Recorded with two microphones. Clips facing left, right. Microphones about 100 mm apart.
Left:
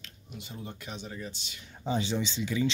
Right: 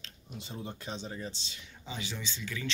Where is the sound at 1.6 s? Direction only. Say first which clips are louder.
Left 13 dB; 40° left (ahead or behind).